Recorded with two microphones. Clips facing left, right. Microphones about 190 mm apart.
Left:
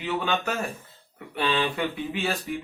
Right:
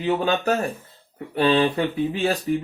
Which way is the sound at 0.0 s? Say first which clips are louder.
Right 6 dB; 35° right (ahead or behind).